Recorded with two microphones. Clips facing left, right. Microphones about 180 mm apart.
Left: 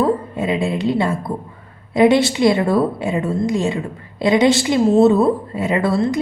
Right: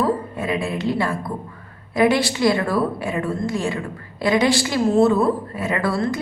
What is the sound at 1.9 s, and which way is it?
A woman's voice, 25° left (ahead or behind).